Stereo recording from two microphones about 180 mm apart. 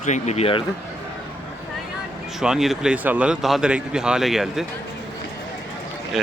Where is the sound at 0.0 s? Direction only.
40° left (ahead or behind).